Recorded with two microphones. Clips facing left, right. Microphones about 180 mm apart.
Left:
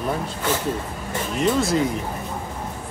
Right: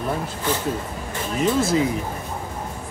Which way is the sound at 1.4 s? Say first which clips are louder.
Right 1 dB; centre (ahead or behind).